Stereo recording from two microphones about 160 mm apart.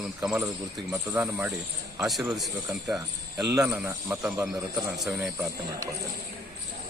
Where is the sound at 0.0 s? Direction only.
5° right (ahead or behind).